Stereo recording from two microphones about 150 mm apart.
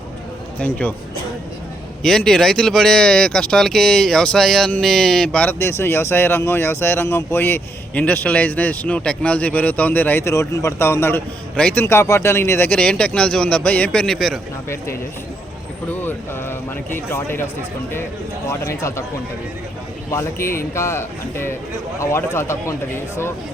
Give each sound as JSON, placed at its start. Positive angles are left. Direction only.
{"t": 0.6, "sound": "speech", "side_deg": 10}
{"t": 2.0, "sound": "speech", "side_deg": 5}
{"t": 15.9, "sound": "speech", "side_deg": 15}
{"t": 18.4, "sound": "speech", "side_deg": 20}
{"t": 20.1, "sound": "speech", "side_deg": 20}